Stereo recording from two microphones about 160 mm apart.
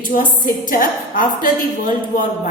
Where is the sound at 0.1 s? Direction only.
60° left (ahead or behind).